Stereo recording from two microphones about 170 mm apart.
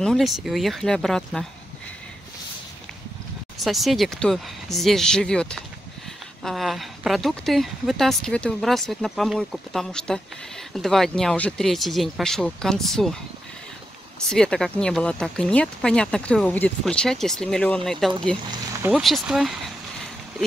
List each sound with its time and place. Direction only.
0.0 s speech: centre (ahead or behind)
3.5 s speech: centre (ahead or behind)
14.3 s speech: 5° left (ahead or behind)
18.5 s a sound: 20° right (ahead or behind)
18.9 s speech: centre (ahead or behind)